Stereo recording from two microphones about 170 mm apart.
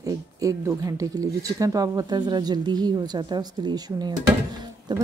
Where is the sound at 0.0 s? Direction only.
20° right (ahead or behind).